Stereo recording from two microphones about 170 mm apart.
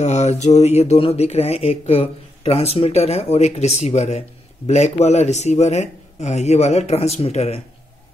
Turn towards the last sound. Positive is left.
turn(degrees=40)  # may be behind; listen again after turning